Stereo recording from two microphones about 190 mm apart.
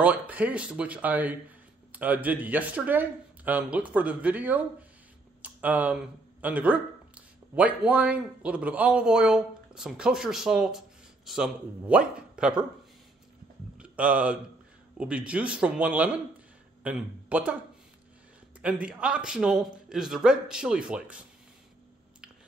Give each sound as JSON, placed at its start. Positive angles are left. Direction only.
{"t": 0.0, "sound": "a man's voice", "side_deg": -5}
{"t": 13.7, "sound": "a man's voice", "side_deg": -5}
{"t": 18.6, "sound": "a man's voice", "side_deg": -5}